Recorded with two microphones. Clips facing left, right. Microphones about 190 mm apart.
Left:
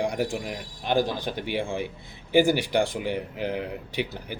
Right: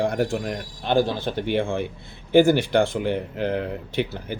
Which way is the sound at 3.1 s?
10° left (ahead or behind).